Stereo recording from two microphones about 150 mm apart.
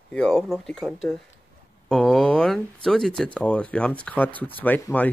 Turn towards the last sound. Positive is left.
turn(degrees=10)  # may be behind; listen again after turning